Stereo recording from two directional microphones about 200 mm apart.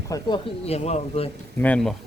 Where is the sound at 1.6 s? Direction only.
5° left (ahead or behind).